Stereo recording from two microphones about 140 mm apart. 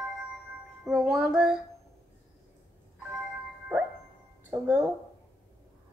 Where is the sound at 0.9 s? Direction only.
Centre (ahead or behind).